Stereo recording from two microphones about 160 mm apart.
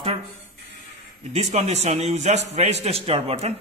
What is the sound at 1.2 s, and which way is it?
A man's voice, 45° right (ahead or behind).